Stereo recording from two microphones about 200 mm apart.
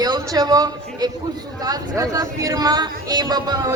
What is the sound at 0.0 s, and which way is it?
A man's voice, 20° right (ahead or behind).